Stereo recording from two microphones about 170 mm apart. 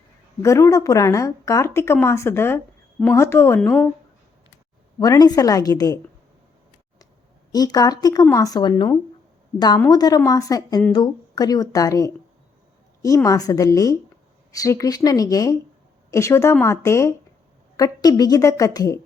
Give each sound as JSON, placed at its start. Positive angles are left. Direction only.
{"t": 0.4, "sound": "a woman's voice", "side_deg": 15}
{"t": 4.9, "sound": "speech", "side_deg": 20}
{"t": 7.5, "sound": "a woman's voice", "side_deg": 25}